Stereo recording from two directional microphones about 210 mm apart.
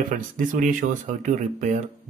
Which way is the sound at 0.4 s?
40° right (ahead or behind).